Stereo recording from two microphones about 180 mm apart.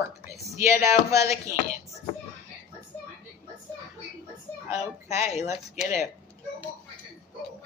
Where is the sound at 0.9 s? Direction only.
15° right (ahead or behind).